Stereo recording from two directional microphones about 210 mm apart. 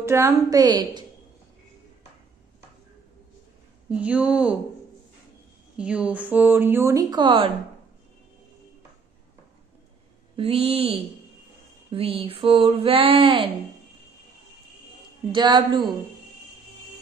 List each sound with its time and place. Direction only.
0.0 s speech: 15° right (ahead or behind)
3.9 s speech: 5° right (ahead or behind)
5.8 s speech: 5° right (ahead or behind); by 7.5 s 25° right (ahead or behind)
10.3 s a sound: 30° right (ahead or behind)
15.0 s a woman's voice: 20° right (ahead or behind)